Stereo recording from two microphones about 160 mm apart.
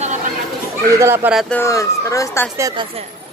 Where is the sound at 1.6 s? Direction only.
20° left (ahead or behind).